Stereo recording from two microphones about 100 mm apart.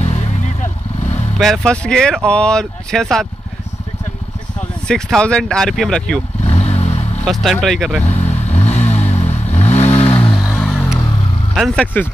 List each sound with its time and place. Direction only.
1.4 s speech: 5° left (ahead or behind)
4.8 s speech: 5° left (ahead or behind)
6.4 s vehicle: 90° left
7.6 s speech: centre (ahead or behind)
8.1 s vehicle: 90° left; by 10.3 s 75° left (ahead or behind)
10.4 s vehicle: centre (ahead or behind)
10.8 s vehicle: 30° left (ahead or behind)
11.5 s speech: centre (ahead or behind)
11.8 s speech: 15° left (ahead or behind)